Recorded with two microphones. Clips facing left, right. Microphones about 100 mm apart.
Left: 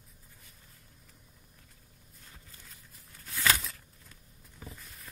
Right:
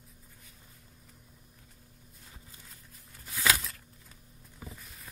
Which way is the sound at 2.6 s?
Centre (ahead or behind).